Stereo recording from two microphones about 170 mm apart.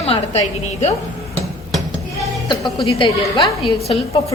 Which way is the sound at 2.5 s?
25° left (ahead or behind).